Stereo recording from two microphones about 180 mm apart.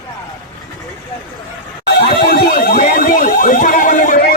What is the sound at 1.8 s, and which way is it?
Alarm, 55° left (ahead or behind).